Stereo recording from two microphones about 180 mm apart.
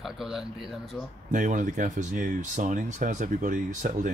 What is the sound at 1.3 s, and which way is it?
Speech, 45° right (ahead or behind).